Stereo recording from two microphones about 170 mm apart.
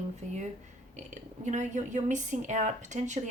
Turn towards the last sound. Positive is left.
turn(degrees=-45)  # may be behind; listen again after turning